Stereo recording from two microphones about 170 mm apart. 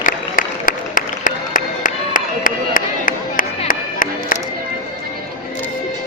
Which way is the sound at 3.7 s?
55° left (ahead or behind).